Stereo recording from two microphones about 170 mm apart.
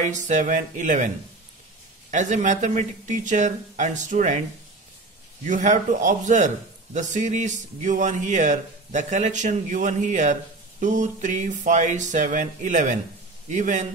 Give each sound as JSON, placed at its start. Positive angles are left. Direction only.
{"t": 0.0, "sound": "a man's voice", "side_deg": -45}
{"t": 5.4, "sound": "a man's voice", "side_deg": -45}